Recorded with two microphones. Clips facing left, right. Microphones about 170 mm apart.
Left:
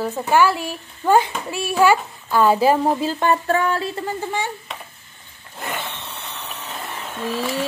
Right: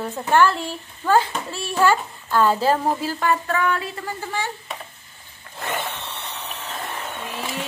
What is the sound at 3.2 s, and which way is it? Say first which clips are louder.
Speech: left 2 dB; 30° left (ahead or behind).